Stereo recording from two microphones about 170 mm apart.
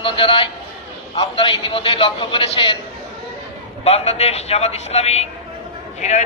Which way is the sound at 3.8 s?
35° left (ahead or behind).